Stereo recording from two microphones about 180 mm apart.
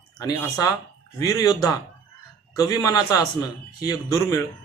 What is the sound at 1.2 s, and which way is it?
Speech, 20° left (ahead or behind).